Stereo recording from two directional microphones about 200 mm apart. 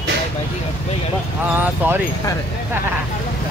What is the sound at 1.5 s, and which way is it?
Speech, 10° right (ahead or behind).